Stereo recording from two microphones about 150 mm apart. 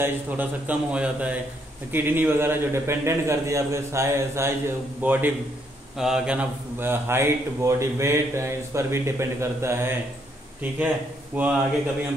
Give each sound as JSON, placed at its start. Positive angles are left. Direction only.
{"t": 0.0, "sound": "a man's voice", "side_deg": -10}
{"t": 11.3, "sound": "a man's voice", "side_deg": -10}